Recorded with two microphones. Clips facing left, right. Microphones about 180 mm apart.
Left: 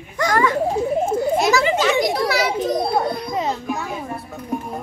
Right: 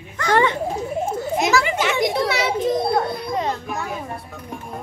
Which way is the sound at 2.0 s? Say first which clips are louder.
Left 1 dB; 25° right (ahead or behind).